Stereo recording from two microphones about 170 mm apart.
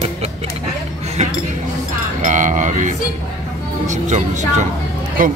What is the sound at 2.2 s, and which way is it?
Music, 45° right (ahead or behind).